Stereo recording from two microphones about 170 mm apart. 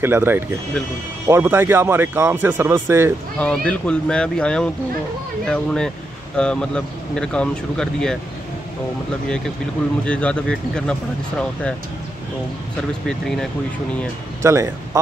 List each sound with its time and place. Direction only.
0.0 s speech: 15° right (ahead or behind)
3.3 s speech: 5° left (ahead or behind)
10.0 s speech: 5° left (ahead or behind)
14.4 s speech: 15° right (ahead or behind)